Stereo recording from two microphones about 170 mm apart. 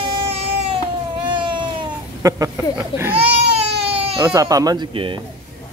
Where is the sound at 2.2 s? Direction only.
20° right (ahead or behind).